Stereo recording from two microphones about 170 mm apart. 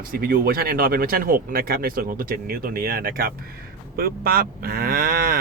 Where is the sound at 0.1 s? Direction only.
60° right (ahead or behind).